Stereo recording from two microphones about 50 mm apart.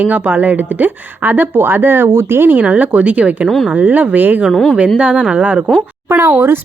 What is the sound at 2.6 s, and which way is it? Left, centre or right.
Speech, right.